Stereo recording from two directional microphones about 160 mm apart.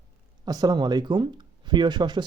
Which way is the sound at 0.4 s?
25° right (ahead or behind).